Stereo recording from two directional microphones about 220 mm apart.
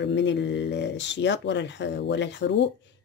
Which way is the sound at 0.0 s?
55° left (ahead or behind).